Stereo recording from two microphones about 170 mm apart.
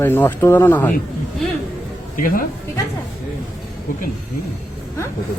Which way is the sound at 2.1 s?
55° left (ahead or behind).